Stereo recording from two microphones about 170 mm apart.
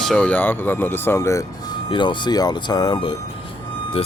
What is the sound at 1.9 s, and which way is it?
Speech, 25° left (ahead or behind).